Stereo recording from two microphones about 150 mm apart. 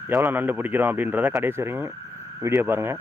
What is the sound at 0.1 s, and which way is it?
Speech, 15° right (ahead or behind).